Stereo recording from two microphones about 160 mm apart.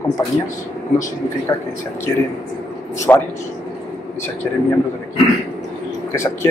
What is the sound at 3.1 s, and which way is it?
Speech, 10° left (ahead or behind).